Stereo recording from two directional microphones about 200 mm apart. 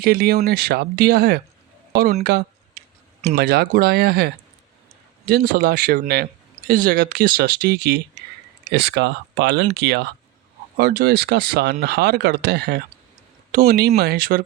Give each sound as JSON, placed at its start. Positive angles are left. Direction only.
{"t": 0.0, "sound": "speech", "side_deg": -50}
{"t": 3.3, "sound": "speech", "side_deg": -50}